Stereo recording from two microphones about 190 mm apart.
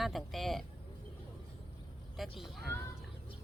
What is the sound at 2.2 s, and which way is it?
Speech, centre (ahead or behind).